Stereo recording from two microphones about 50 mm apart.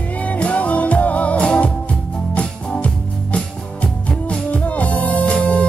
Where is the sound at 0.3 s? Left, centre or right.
Left.